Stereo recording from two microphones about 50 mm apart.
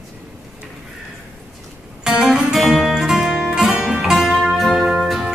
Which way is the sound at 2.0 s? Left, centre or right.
Centre.